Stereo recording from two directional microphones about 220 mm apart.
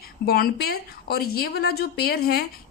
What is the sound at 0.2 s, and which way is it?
A woman's voice, 45° left (ahead or behind).